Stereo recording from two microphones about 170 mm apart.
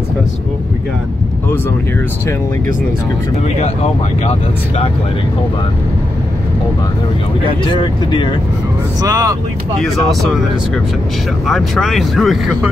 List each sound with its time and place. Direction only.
3.6 s speech: 40° left (ahead or behind)
7.4 s speech: 30° left (ahead or behind)
9.0 s speech: 20° right (ahead or behind)
11.4 s speech: centre (ahead or behind)